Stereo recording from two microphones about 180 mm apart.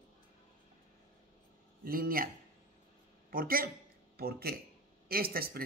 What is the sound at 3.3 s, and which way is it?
Speech, 55° right (ahead or behind).